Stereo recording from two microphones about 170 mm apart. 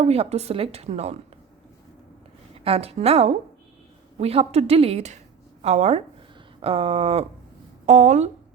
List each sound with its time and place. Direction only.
0.0 s a woman's voice: 35° right (ahead or behind)
2.6 s a woman's voice: 35° right (ahead or behind)